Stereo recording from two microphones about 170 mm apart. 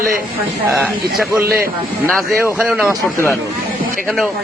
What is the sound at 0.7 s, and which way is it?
Speech, 10° right (ahead or behind).